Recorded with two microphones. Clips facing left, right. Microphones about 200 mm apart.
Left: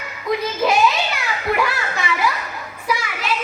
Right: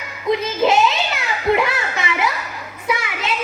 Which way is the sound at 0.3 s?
25° right (ahead or behind).